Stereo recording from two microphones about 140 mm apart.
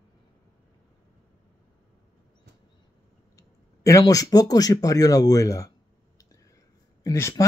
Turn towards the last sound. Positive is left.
turn(degrees=20)  # may be behind; listen again after turning